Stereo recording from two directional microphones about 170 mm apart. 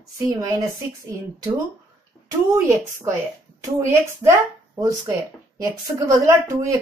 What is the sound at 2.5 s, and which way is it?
Speech, 15° right (ahead or behind).